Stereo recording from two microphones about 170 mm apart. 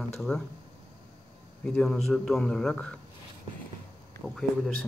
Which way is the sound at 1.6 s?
5° left (ahead or behind).